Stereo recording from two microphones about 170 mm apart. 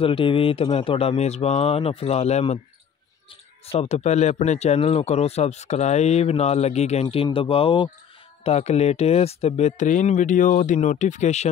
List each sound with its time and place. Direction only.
0.0 s speech: 30° left (ahead or behind)